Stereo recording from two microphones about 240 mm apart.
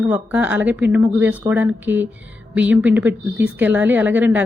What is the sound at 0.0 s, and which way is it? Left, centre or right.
A woman's voice, centre.